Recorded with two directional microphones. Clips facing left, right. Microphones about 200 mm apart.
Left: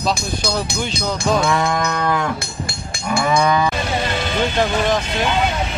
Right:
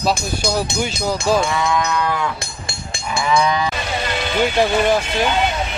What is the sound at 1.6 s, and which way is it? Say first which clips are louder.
Livestock: even; 45° left (ahead or behind).